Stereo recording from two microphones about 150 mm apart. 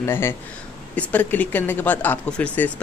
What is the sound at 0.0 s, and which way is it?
Speech, 15° left (ahead or behind).